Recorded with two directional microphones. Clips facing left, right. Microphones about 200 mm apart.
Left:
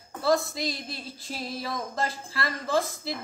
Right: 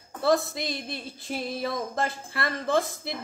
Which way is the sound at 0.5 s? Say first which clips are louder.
Even; 55° right (ahead or behind).